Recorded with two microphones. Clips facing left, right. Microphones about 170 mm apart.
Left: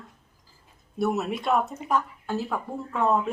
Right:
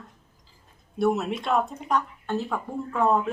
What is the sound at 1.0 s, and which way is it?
Speech, centre (ahead or behind).